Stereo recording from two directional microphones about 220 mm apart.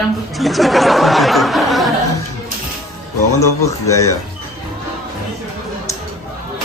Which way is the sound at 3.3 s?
15° left (ahead or behind).